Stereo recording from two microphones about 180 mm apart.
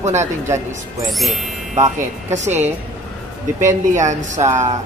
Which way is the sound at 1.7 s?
40° right (ahead or behind).